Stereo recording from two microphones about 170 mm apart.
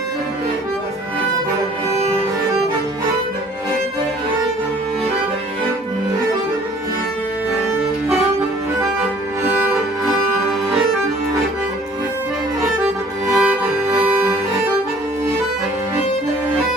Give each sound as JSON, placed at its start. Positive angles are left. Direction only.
{"t": 9.4, "sound": "music", "side_deg": -10}
{"t": 13.3, "sound": "music", "side_deg": -5}